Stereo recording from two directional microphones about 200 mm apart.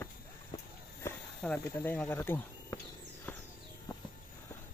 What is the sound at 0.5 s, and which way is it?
Walk, 20° left (ahead or behind).